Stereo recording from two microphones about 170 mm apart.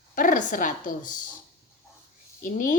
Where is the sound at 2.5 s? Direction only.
50° left (ahead or behind).